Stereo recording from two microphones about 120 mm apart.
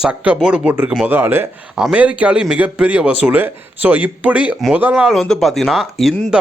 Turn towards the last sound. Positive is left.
turn(degrees=0)  # may be behind; listen again after turning